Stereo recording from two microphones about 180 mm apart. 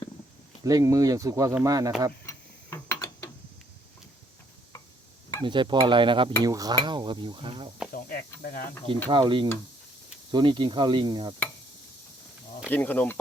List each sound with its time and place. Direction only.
0.6 s cutlery: 20° right (ahead or behind)
2.2 s mechanisms: 15° left (ahead or behind)
5.4 s cutlery: 25° right (ahead or behind)
8.4 s speech: 55° left (ahead or behind)
9.0 s cutlery: 25° right (ahead or behind)
12.7 s speech: 10° left (ahead or behind)